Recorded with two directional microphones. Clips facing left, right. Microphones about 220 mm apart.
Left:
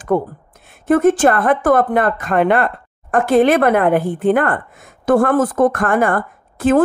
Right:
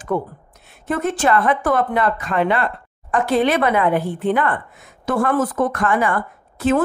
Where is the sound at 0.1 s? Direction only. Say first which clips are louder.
Left 5 dB; 50° left (ahead or behind).